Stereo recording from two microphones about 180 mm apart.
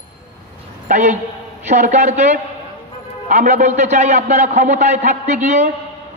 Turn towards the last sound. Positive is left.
turn(degrees=-40)  # may be behind; listen again after turning